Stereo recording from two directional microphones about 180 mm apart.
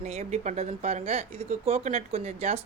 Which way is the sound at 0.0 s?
35° right (ahead or behind).